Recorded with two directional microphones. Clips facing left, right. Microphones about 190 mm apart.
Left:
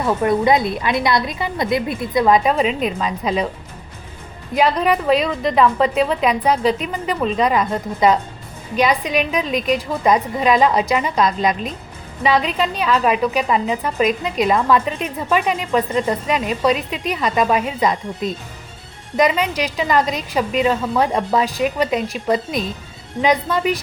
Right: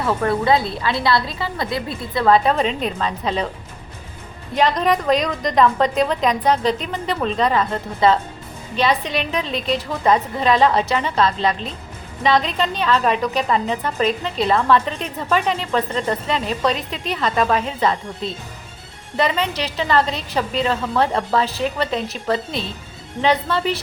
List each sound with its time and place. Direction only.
0.0 s a woman's voice: 15° left (ahead or behind)
4.5 s a woman's voice: 10° left (ahead or behind)